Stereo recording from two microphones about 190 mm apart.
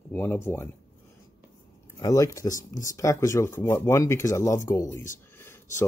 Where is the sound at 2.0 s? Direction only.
15° left (ahead or behind).